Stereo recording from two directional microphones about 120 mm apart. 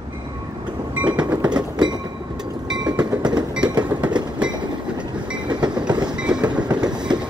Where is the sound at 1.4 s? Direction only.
35° right (ahead or behind).